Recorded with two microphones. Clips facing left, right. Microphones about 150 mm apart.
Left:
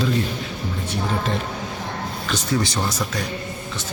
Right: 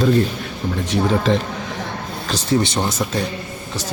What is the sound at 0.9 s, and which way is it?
Speech, 90° right.